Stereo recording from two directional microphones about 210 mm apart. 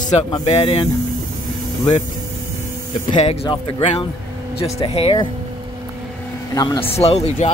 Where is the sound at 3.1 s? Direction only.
30° left (ahead or behind).